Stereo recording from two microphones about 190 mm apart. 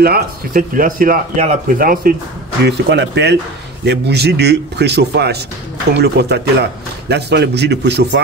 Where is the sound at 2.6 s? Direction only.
65° right (ahead or behind).